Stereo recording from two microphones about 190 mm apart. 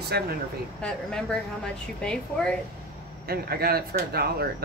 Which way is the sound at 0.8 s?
5° left (ahead or behind).